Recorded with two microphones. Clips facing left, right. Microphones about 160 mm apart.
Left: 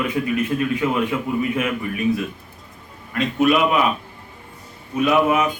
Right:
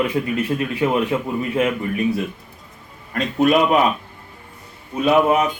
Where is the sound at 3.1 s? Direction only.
40° right (ahead or behind).